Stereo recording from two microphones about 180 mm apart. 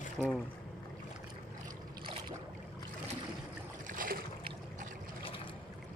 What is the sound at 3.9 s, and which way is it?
Boat, 50° right (ahead or behind).